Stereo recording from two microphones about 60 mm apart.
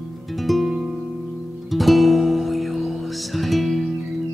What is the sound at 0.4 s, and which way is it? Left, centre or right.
Music, centre.